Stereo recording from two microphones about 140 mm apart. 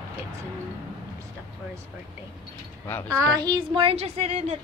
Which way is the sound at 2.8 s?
10° left (ahead or behind).